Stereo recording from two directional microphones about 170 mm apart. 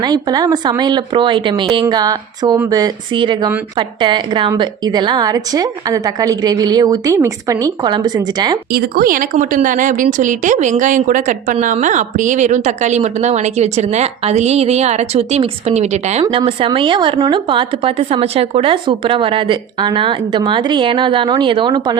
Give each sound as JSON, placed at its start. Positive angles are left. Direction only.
{"t": 0.0, "sound": "a woman's voice", "side_deg": -25}
{"t": 8.7, "sound": "a woman's voice", "side_deg": -55}
{"t": 16.2, "sound": "a woman's voice", "side_deg": -20}